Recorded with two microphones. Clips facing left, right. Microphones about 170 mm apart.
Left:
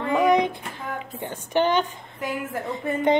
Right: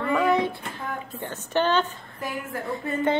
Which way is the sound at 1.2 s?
15° left (ahead or behind).